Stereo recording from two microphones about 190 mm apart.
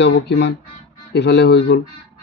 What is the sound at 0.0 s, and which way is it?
Speech, 65° left (ahead or behind).